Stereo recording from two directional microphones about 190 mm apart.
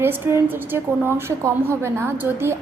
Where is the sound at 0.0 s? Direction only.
10° right (ahead or behind).